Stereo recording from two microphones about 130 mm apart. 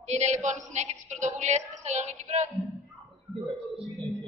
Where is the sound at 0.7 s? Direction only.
60° right (ahead or behind).